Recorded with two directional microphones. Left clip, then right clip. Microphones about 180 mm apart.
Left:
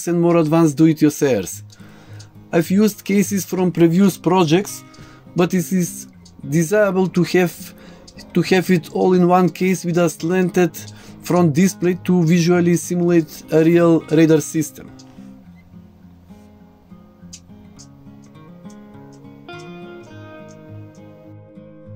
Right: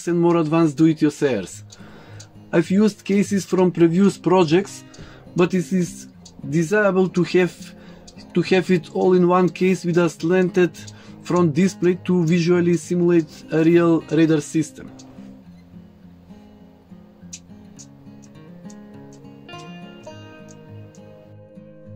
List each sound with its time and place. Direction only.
0.0 s speech: 50° left (ahead or behind)
2.5 s speech: 50° left (ahead or behind)